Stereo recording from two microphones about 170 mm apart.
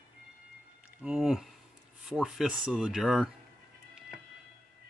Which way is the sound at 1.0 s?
5° right (ahead or behind).